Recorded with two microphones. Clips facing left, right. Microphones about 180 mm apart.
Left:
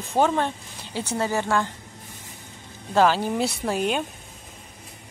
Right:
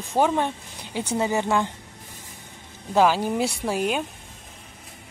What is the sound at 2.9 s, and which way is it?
A woman's voice, 10° right (ahead or behind).